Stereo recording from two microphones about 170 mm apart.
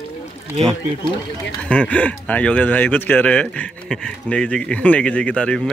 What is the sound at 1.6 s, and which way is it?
Speech, 5° left (ahead or behind).